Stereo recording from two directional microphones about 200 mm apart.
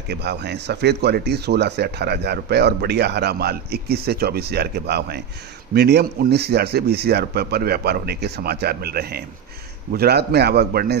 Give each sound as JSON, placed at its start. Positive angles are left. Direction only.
{"t": 0.1, "sound": "speech", "side_deg": -55}